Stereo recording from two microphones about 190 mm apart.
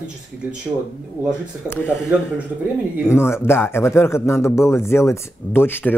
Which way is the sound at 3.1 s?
15° left (ahead or behind).